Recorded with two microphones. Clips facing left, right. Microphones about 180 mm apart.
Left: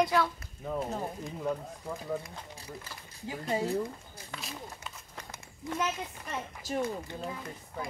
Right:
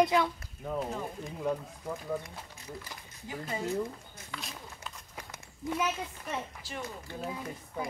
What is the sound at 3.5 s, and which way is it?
Speech, 30° left (ahead or behind).